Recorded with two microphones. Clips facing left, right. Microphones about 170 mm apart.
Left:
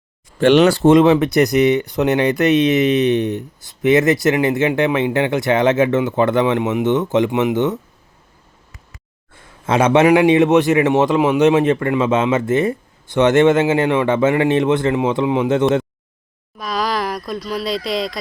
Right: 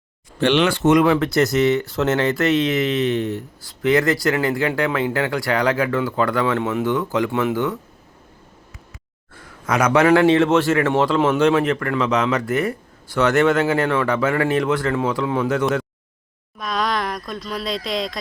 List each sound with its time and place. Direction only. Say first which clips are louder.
0.3 s speech: left 6 dB; 45° left (ahead or behind); by 7.8 s 20° left (ahead or behind)
9.6 s speech: left 3 dB; 25° left (ahead or behind)
16.6 s speech: left 2 dB; 5° left (ahead or behind)